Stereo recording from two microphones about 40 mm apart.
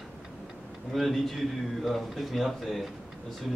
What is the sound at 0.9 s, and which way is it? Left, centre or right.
Speech, centre.